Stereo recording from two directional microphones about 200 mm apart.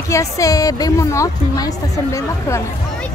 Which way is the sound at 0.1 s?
15° left (ahead or behind).